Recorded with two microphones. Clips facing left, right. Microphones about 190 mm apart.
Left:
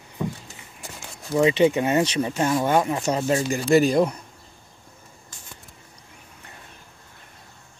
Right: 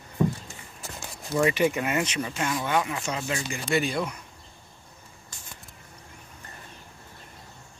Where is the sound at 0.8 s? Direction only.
20° left (ahead or behind); by 4.2 s 40° left (ahead or behind).